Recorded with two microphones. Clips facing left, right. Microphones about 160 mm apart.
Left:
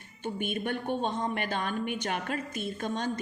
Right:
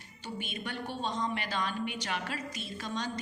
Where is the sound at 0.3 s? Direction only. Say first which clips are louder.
Left 6 dB; 55° left (ahead or behind).